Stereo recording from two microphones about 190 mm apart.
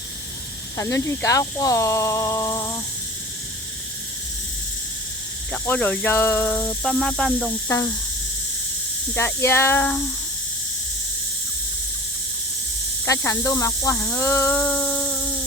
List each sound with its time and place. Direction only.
0.8 s speech: 15° left (ahead or behind)
5.5 s speech: 10° left (ahead or behind)
9.1 s speech: 10° left (ahead or behind)
13.1 s speech: 15° left (ahead or behind)